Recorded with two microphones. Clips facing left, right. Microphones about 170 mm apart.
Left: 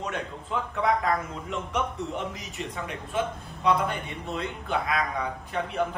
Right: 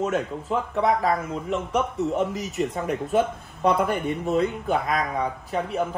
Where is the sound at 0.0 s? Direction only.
45° right (ahead or behind).